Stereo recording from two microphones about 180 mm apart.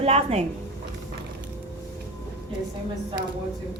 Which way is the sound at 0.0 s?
35° right (ahead or behind).